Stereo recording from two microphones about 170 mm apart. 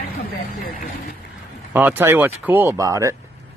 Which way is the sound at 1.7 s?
10° right (ahead or behind).